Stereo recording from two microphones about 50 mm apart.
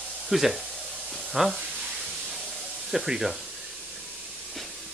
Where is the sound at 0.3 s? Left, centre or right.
Centre.